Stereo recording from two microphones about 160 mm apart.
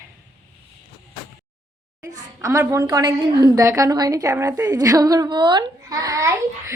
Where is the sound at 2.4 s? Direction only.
20° right (ahead or behind).